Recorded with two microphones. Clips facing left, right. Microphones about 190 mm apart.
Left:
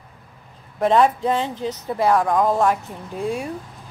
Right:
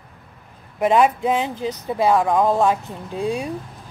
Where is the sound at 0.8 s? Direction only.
5° right (ahead or behind).